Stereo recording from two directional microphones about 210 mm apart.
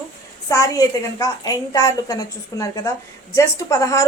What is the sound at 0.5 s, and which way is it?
A woman's voice, 15° left (ahead or behind).